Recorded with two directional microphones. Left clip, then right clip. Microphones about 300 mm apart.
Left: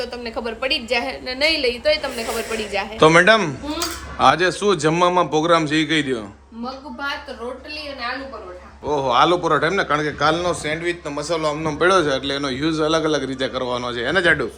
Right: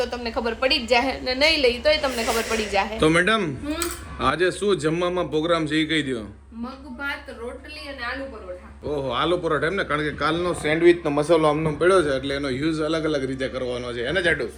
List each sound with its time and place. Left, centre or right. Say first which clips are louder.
0.0 s a woman's voice: right 1 dB; centre
8.9 s a man's voice: left 7 dB; centre
14.2 s speech: left 5 dB; left